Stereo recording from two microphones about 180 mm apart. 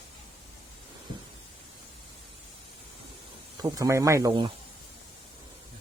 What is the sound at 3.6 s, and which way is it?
Speech, 20° right (ahead or behind).